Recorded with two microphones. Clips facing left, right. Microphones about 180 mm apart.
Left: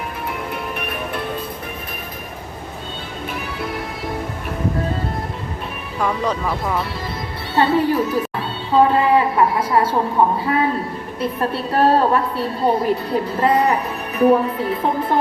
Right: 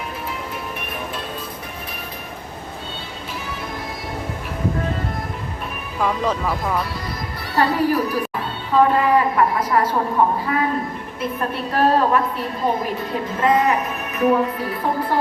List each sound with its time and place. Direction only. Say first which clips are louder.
6.0 s speech: even; centre (ahead or behind)
7.5 s a woman's voice: left 2 dB; 25° left (ahead or behind)
11.2 s a woman's voice: left 3 dB; 30° left (ahead or behind)